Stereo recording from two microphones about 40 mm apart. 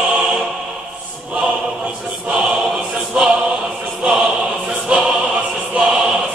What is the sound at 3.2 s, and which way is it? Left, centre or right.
Choir, right.